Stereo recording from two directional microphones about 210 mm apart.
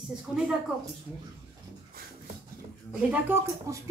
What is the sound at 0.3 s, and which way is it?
Speech, centre (ahead or behind).